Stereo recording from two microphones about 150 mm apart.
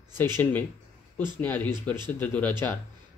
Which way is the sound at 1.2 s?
15° left (ahead or behind).